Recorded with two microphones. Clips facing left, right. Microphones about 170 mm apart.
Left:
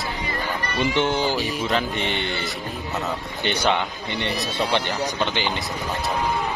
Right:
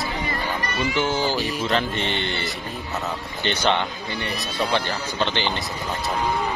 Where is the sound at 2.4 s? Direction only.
Centre (ahead or behind).